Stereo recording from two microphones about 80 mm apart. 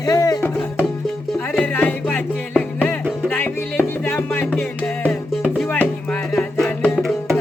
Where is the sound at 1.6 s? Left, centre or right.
Centre.